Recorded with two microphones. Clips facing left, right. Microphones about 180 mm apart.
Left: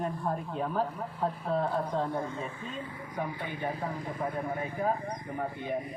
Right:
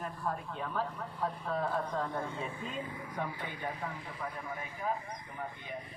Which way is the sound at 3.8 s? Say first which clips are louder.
Left 7 dB; 45° left (ahead or behind).